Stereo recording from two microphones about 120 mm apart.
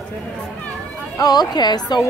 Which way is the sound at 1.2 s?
35° left (ahead or behind).